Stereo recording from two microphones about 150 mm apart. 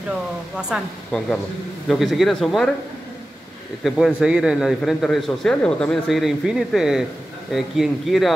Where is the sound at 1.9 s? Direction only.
Centre (ahead or behind).